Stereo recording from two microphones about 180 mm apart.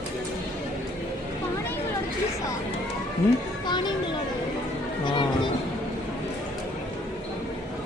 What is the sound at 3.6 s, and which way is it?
Music, 25° left (ahead or behind).